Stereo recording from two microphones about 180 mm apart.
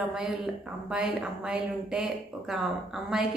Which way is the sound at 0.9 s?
5° right (ahead or behind).